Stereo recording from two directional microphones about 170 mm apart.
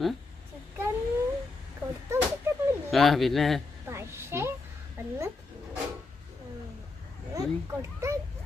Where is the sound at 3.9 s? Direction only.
15° right (ahead or behind).